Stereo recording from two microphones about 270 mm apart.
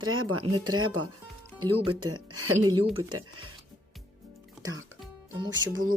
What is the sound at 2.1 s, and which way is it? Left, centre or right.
Speech, right.